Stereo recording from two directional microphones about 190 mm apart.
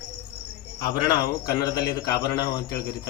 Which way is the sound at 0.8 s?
20° left (ahead or behind).